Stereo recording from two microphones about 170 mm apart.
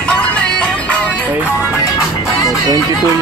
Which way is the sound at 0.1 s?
5° left (ahead or behind).